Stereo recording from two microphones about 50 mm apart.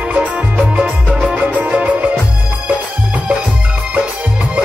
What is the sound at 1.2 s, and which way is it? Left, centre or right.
Music, centre.